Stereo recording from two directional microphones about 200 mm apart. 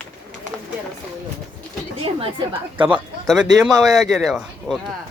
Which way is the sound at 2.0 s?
25° right (ahead or behind).